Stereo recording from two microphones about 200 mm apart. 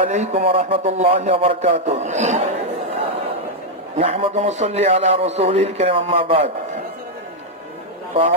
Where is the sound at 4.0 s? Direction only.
30° right (ahead or behind).